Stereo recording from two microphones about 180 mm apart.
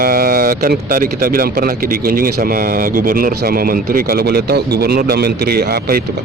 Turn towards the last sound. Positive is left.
turn(degrees=-60)  # may be behind; listen again after turning